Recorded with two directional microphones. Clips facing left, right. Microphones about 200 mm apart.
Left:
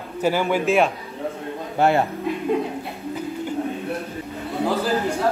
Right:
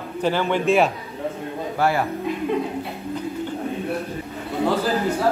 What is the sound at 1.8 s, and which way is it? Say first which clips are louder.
Speech: left 3 dB; 25° left (ahead or behind).